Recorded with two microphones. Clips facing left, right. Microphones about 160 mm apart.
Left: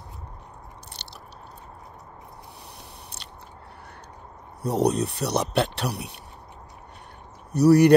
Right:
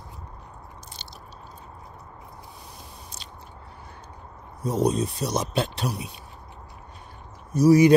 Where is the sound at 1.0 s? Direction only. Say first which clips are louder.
Even; 70° left (ahead or behind).